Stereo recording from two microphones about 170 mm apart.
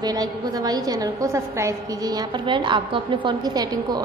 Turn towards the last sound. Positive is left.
turn(degrees=-25)  # may be behind; listen again after turning